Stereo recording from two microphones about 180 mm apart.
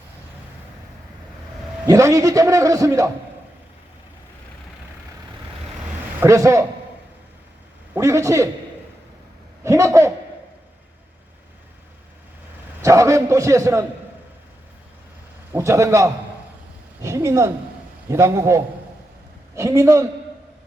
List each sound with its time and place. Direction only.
1.9 s a man's voice: 15° right (ahead or behind)
6.1 s a man's voice: 15° right (ahead or behind)
7.9 s a man's voice: 15° right (ahead or behind)
9.6 s a man's voice: 15° right (ahead or behind)
12.8 s a man's voice: 15° right (ahead or behind)
15.5 s a man's voice: 15° right (ahead or behind)